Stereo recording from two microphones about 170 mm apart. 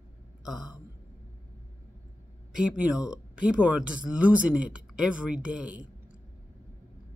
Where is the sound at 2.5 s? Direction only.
5° right (ahead or behind).